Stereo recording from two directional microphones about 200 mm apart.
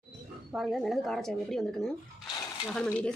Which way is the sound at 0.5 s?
Centre (ahead or behind).